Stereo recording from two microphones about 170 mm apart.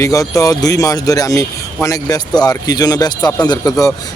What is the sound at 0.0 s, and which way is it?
A man's voice, 20° left (ahead or behind).